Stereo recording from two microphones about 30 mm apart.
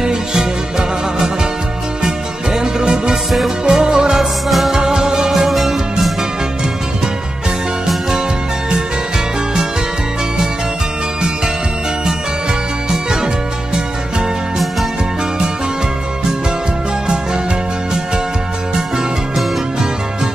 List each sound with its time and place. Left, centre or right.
0.0 s music: right
4.5 s music: centre
4.7 s music: right
5.3 s music: centre